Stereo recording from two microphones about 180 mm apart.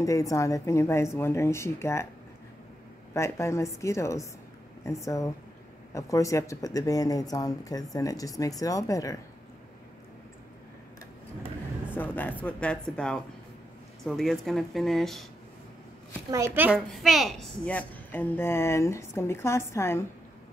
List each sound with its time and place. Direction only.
0.0 s a woman's voice: 20° left (ahead or behind)
3.2 s a woman's voice: 15° left (ahead or behind)
12.0 s a woman's voice: 10° left (ahead or behind)
16.3 s a woman's voice: 15° right (ahead or behind); by 20.1 s 15° left (ahead or behind)